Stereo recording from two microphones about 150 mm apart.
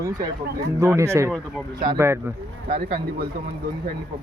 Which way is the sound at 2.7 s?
85° right.